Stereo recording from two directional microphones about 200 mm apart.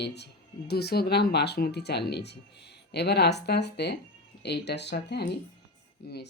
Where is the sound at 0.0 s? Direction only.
55° left (ahead or behind).